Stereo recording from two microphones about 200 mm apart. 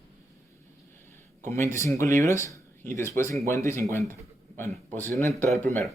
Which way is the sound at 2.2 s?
35° right (ahead or behind).